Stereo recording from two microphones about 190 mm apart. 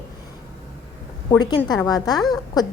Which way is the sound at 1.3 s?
20° left (ahead or behind).